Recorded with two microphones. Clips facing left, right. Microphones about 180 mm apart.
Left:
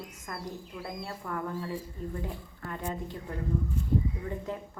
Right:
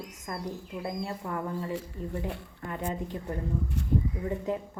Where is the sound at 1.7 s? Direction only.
80° right.